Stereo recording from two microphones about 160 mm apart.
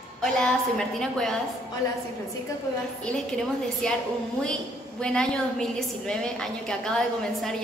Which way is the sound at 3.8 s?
5° left (ahead or behind).